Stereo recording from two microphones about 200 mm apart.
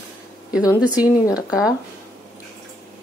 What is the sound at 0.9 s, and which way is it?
Speech, 20° left (ahead or behind).